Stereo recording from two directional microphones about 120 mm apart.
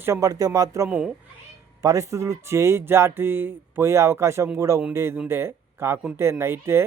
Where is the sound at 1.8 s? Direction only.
25° right (ahead or behind).